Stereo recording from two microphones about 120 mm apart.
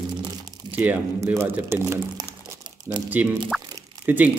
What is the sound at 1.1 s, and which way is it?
Speech, 20° right (ahead or behind).